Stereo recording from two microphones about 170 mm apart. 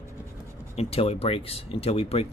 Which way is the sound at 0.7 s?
35° left (ahead or behind).